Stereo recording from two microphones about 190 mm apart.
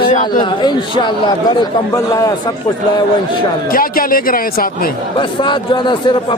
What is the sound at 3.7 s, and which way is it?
Speech, 50° left (ahead or behind).